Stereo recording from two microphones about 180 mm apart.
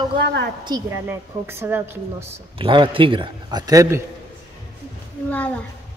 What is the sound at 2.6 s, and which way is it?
A man's voice, 30° right (ahead or behind).